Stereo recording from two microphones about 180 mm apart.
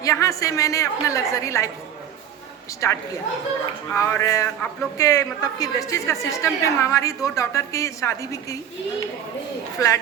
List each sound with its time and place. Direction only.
0.0 s a woman's voice: 15° left (ahead or behind)
2.8 s a woman's voice: 15° left (ahead or behind)
9.8 s a woman's voice: 20° left (ahead or behind)